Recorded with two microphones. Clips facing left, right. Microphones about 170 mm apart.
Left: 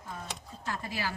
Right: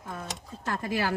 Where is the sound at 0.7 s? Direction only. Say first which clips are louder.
Right 6 dB; 55° right (ahead or behind).